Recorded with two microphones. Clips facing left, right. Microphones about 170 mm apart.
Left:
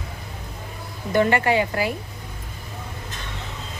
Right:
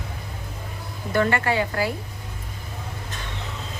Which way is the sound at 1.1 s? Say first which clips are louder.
Left 3 dB; 20° left (ahead or behind).